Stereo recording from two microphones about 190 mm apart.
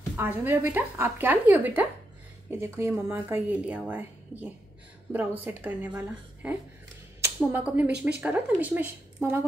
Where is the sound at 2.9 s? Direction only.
10° right (ahead or behind).